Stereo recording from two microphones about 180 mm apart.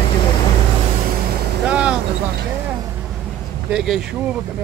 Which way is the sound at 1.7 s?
5° right (ahead or behind).